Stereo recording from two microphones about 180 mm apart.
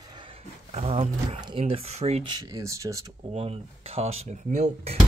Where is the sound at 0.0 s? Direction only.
25° right (ahead or behind).